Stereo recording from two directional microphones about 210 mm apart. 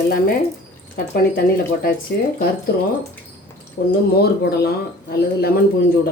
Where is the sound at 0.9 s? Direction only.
45° left (ahead or behind).